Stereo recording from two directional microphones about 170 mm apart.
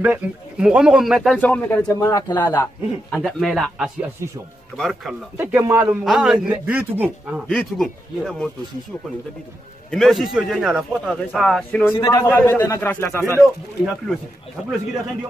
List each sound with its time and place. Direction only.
0.0 s speech: 10° right (ahead or behind); by 3.2 s 15° left (ahead or behind)
3.2 s speech: centre (ahead or behind)
5.4 s a man's voice: 15° right (ahead or behind)
9.8 s a man's voice: centre (ahead or behind)
11.9 s speech: 20° left (ahead or behind)
13.4 s speech: centre (ahead or behind)